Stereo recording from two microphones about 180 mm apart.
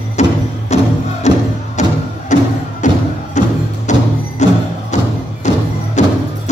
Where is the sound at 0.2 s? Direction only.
40° left (ahead or behind).